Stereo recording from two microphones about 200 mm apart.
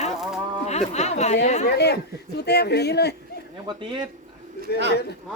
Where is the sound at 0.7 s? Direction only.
35° left (ahead or behind).